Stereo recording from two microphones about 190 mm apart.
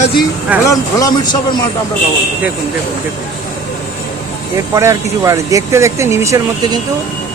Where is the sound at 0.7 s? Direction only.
20° left (ahead or behind).